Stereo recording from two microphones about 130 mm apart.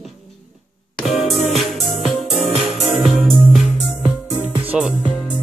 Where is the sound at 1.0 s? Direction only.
Centre (ahead or behind).